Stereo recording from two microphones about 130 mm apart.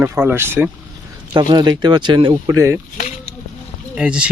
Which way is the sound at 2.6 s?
20° right (ahead or behind).